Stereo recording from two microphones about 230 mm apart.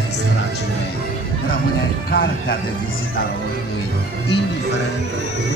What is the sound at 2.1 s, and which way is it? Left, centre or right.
Speech, left.